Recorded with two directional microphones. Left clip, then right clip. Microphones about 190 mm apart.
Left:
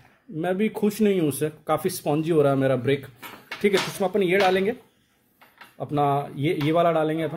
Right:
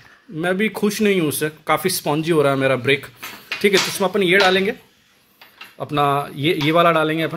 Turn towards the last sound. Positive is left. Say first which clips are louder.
# right 5 dB
turn(degrees=-5)  # may be behind; listen again after turning